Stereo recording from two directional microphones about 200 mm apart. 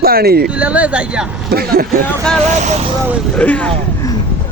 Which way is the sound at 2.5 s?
35° right (ahead or behind).